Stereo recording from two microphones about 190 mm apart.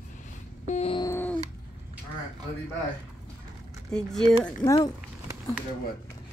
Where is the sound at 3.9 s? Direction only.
5° left (ahead or behind).